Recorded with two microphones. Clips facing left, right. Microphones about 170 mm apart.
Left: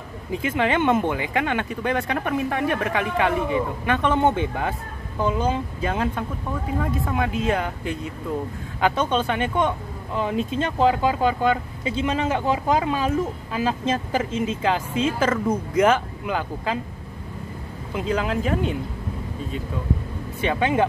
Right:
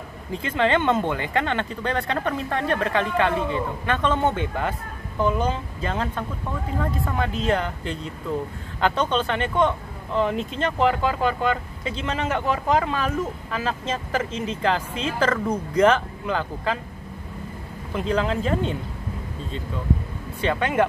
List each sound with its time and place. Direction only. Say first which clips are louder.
0.3 s speech: right 1 dB; 10° left (ahead or behind)
17.9 s speech: right 1 dB; 10° left (ahead or behind)
20.3 s speech: left 1 dB; 15° left (ahead or behind)